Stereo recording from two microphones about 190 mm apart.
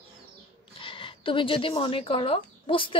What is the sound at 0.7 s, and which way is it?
Speech, 25° left (ahead or behind).